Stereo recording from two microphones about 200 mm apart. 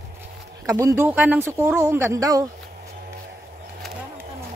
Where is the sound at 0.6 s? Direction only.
15° right (ahead or behind).